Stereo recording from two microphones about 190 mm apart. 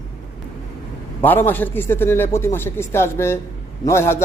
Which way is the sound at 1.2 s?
10° left (ahead or behind).